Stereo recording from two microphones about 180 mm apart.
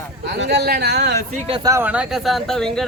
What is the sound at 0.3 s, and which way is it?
Speech, 70° right (ahead or behind).